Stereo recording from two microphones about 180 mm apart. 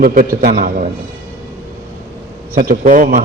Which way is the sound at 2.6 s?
50° right (ahead or behind).